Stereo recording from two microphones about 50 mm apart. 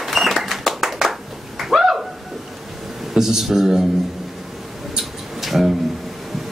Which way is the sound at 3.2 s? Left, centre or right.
Centre.